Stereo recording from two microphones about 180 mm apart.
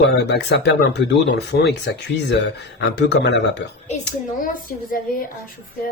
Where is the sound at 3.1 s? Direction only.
65° left (ahead or behind).